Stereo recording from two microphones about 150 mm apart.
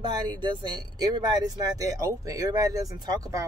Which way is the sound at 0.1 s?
30° right (ahead or behind).